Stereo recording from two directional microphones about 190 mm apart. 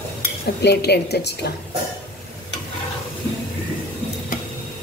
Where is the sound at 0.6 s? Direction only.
60° left (ahead or behind).